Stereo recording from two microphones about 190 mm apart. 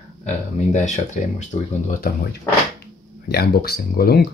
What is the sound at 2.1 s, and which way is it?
Speech, 50° left (ahead or behind).